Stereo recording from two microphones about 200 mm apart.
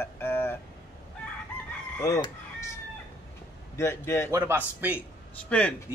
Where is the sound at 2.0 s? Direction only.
15° left (ahead or behind).